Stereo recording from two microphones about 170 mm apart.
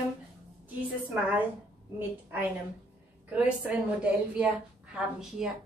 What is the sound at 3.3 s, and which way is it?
A woman's voice, 10° right (ahead or behind).